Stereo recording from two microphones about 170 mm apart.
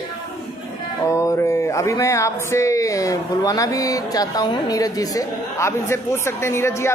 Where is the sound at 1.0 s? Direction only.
20° left (ahead or behind).